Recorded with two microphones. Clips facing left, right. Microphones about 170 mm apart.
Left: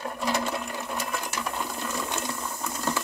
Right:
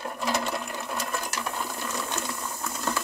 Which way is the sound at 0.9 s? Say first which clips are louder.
Right 1 dB; 5° left (ahead or behind).